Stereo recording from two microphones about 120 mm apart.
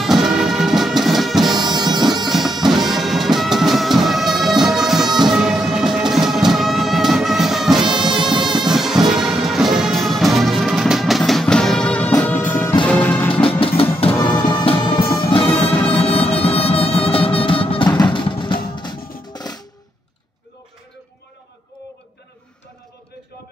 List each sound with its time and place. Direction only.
0.0 s music: centre (ahead or behind)
1.6 s bagpipes: 35° right (ahead or behind)
2.2 s music: centre (ahead or behind)
7.8 s music: 40° right (ahead or behind)
8.6 s music: 5° right (ahead or behind)
13.3 s music: 50° left (ahead or behind)
18.1 s drum: 45° left (ahead or behind)